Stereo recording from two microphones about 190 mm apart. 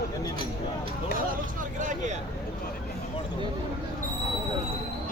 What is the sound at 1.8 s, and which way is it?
Speech, 40° right (ahead or behind).